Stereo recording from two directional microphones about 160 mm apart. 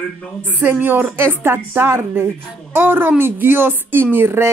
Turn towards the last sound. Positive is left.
turn(degrees=-15)  # may be behind; listen again after turning